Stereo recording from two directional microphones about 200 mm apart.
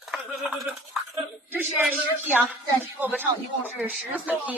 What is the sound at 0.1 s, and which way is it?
A man's voice, centre (ahead or behind).